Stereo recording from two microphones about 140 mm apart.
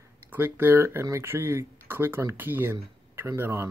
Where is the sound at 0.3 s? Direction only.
15° right (ahead or behind).